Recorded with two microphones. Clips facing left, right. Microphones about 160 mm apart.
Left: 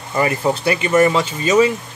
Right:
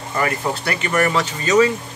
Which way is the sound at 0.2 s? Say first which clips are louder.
Left 5 dB; 20° left (ahead or behind).